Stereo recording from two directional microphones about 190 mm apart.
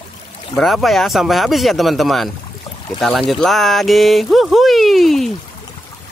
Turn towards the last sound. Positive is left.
turn(degrees=0)  # may be behind; listen again after turning